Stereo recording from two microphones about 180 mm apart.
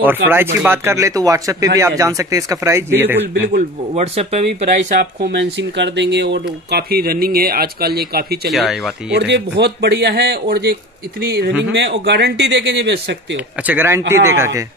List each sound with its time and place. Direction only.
0.0 s speech: 10° right (ahead or behind)
3.9 s speech: 35° right (ahead or behind)
5.2 s speech: 80° right; by 8.4 s 60° right (ahead or behind)
8.5 s speech: centre (ahead or behind)
9.1 s speech: 70° right (ahead or behind)
13.7 s speech: 10° right (ahead or behind)